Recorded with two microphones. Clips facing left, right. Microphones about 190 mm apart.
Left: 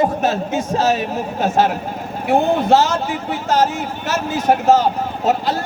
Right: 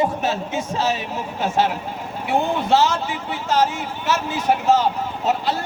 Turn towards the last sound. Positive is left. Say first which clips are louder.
# left 3 dB
turn(degrees=40)  # may be behind; listen again after turning